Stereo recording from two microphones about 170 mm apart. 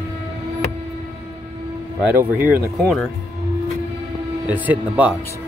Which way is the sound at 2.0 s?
10° right (ahead or behind).